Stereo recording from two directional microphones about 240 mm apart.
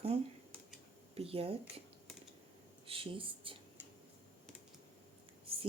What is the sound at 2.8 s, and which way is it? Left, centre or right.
Speech, right.